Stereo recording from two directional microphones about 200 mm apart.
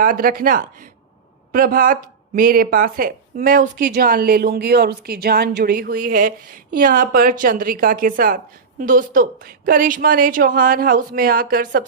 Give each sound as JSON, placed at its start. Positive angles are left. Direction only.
{"t": 0.0, "sound": "a woman's voice", "side_deg": -45}